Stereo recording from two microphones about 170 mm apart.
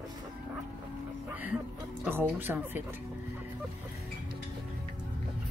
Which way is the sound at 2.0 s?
10° right (ahead or behind).